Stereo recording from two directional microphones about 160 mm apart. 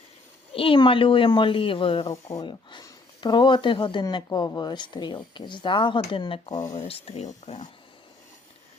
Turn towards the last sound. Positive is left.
turn(degrees=45)  # may be behind; listen again after turning